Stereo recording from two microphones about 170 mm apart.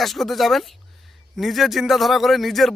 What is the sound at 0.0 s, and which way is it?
Speech, centre (ahead or behind).